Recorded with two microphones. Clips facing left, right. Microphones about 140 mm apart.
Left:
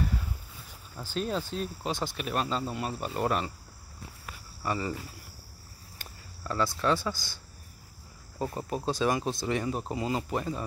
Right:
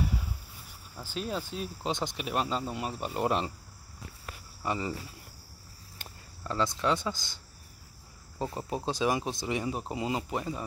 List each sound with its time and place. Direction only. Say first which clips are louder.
0.0 s a sound: even; 10° right (ahead or behind)
0.9 s speech: left 3 dB; 5° right (ahead or behind)
1.8 s speech: even; 20° right (ahead or behind)
4.6 s speech: left 1 dB; 20° right (ahead or behind)
5.9 s cricket: even; 20° right (ahead or behind)
8.4 s speech: left 1 dB; 20° right (ahead or behind)